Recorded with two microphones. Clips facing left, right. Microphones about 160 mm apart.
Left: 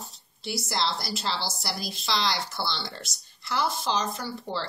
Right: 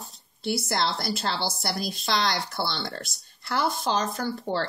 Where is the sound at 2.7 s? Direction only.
50° right (ahead or behind).